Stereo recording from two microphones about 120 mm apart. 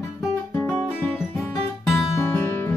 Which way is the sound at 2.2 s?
20° left (ahead or behind).